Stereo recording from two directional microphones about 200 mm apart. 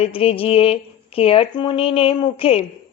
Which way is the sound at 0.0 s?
30° left (ahead or behind).